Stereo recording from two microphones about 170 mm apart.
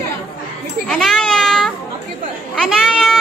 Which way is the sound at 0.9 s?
Centre (ahead or behind).